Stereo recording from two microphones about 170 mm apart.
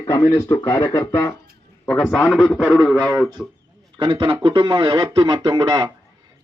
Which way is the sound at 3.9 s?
25° right (ahead or behind).